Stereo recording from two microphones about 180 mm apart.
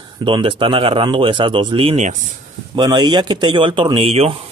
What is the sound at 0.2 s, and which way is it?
Speech, 30° right (ahead or behind).